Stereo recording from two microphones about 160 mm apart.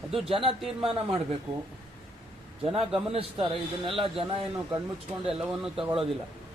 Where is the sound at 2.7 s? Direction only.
35° right (ahead or behind).